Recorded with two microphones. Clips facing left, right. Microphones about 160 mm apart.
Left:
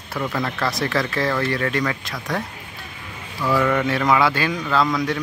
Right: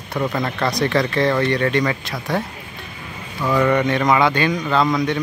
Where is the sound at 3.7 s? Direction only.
5° left (ahead or behind).